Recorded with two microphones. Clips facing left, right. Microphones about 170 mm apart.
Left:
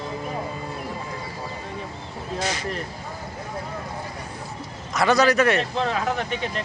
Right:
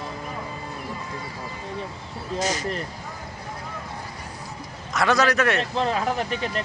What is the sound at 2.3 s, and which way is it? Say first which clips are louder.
Speech: right 2 dB; 40° right (ahead or behind).